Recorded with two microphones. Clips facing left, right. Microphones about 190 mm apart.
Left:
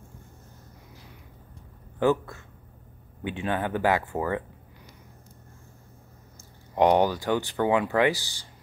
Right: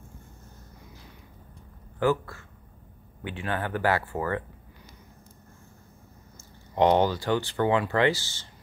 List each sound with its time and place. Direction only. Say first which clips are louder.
2.0 s speech: left 2 dB; 20° left (ahead or behind)
6.7 s speech: left 1 dB; 15° left (ahead or behind)